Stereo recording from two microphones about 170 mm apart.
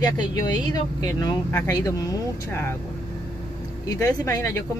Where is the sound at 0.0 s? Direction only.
20° left (ahead or behind).